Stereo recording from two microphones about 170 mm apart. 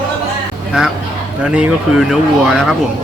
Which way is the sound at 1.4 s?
5° right (ahead or behind).